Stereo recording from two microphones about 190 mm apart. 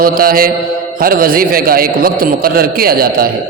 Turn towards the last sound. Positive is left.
turn(degrees=-50)  # may be behind; listen again after turning